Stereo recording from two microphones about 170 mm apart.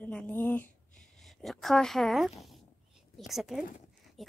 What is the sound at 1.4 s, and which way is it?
Speech, centre (ahead or behind).